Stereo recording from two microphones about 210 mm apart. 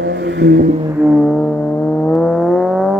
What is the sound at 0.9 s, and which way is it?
Vehicle, 5° right (ahead or behind).